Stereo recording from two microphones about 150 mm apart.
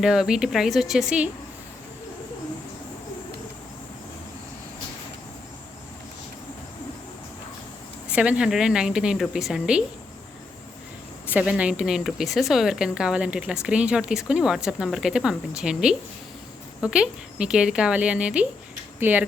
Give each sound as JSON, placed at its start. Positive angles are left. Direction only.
{"t": 0.0, "sound": "a woman's voice", "side_deg": -5}
{"t": 8.1, "sound": "a woman's voice", "side_deg": -5}
{"t": 11.3, "sound": "a woman's voice", "side_deg": -10}